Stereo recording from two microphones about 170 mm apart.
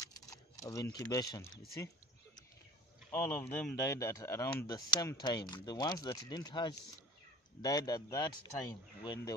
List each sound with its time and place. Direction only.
0.0 s keys jangling: 20° left (ahead or behind)
0.9 s speech: 20° left (ahead or behind)
3.1 s speech: 15° left (ahead or behind)